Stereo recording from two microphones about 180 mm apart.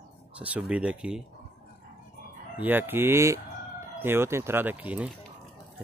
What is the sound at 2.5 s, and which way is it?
Speech, 10° right (ahead or behind).